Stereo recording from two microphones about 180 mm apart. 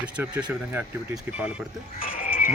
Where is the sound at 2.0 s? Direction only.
50° left (ahead or behind).